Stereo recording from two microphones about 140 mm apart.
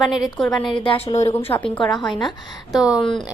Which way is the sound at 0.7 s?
35° left (ahead or behind).